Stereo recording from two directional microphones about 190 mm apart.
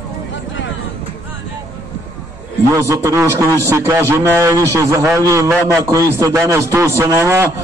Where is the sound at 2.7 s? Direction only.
15° right (ahead or behind).